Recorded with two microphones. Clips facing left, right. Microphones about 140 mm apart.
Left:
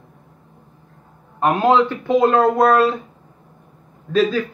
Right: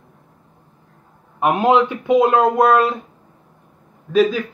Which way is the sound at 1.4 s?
15° right (ahead or behind).